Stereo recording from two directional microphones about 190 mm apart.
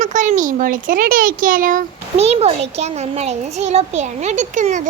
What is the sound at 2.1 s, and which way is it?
A child's voice, 35° right (ahead or behind).